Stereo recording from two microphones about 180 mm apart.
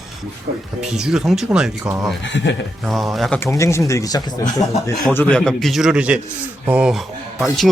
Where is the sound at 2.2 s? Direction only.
80° left.